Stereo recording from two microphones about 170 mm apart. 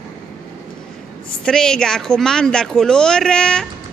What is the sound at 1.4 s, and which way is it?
Speech, 5° left (ahead or behind).